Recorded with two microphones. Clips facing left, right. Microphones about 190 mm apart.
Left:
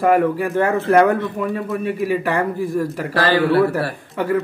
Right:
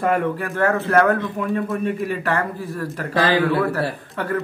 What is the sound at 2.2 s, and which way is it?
Speech, 15° left (ahead or behind).